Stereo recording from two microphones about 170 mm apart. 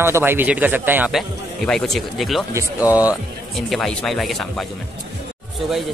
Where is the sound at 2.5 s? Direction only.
15° right (ahead or behind).